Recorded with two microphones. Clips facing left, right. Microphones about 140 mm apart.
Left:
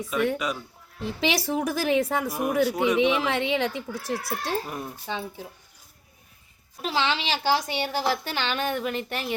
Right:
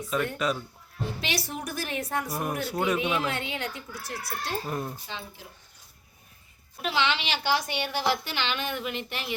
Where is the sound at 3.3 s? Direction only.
90° left.